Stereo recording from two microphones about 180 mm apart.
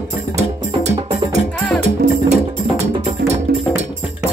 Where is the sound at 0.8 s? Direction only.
40° right (ahead or behind).